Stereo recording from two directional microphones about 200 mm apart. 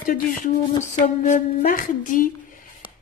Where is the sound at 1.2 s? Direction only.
40° left (ahead or behind).